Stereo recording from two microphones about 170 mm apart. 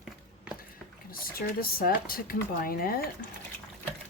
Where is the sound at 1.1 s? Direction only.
60° left (ahead or behind).